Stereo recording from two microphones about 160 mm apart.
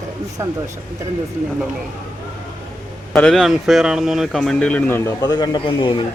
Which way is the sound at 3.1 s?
5° left (ahead or behind).